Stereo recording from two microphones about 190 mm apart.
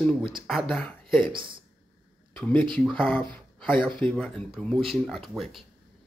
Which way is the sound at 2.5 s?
25° right (ahead or behind).